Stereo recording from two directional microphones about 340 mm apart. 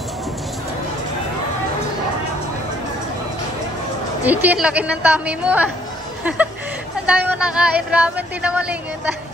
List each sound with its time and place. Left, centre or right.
4.2 s speech: centre